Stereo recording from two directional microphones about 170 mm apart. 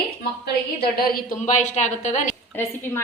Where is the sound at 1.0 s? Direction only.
45° left (ahead or behind).